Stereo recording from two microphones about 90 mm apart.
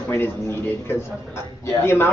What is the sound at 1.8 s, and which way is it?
Speech, 25° left (ahead or behind).